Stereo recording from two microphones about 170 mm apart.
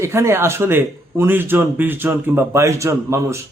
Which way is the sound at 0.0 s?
15° right (ahead or behind).